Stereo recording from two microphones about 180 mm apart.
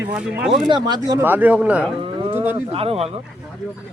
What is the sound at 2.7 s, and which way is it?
Speech, 35° right (ahead or behind).